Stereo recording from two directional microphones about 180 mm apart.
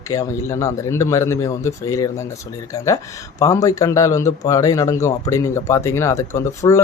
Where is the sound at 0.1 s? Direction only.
15° left (ahead or behind).